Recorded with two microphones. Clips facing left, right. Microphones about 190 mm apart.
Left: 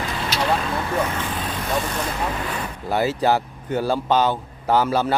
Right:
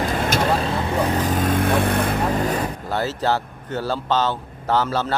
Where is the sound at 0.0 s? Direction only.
50° right (ahead or behind).